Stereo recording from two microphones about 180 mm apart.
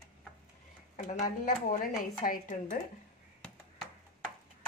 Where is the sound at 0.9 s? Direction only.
45° left (ahead or behind).